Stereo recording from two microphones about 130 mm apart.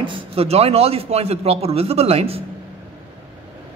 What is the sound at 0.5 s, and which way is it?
Speech, 50° right (ahead or behind).